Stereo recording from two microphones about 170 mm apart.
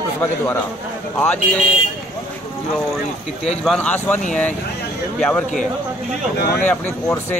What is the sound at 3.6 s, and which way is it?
A man's voice, 5° left (ahead or behind).